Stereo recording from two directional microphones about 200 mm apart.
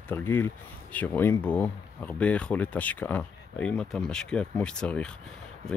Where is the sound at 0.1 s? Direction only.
10° left (ahead or behind).